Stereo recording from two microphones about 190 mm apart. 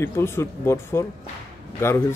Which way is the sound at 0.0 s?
15° left (ahead or behind).